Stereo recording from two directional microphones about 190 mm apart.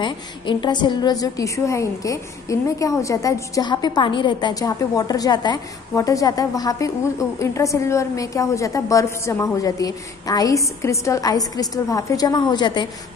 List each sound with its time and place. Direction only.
0.0 s a woman's voice: 25° left (ahead or behind)